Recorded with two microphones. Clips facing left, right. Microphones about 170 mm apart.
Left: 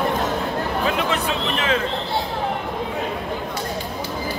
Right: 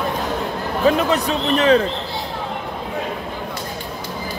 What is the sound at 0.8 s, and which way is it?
Speech, 40° right (ahead or behind).